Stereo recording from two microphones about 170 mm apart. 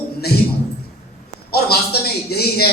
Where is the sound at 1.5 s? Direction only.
70° left (ahead or behind).